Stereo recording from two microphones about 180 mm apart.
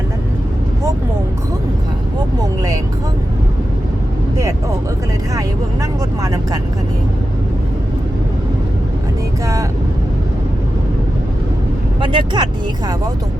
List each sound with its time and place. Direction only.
6.2 s speech: 20° right (ahead or behind)
11.9 s speech: 25° right (ahead or behind)